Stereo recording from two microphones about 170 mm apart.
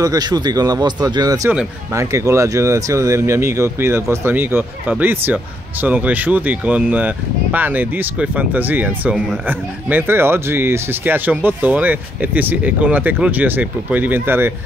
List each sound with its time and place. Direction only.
0.0 s speech: 20° right (ahead or behind)